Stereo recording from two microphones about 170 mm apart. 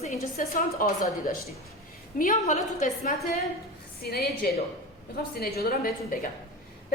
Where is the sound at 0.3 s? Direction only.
55° left (ahead or behind).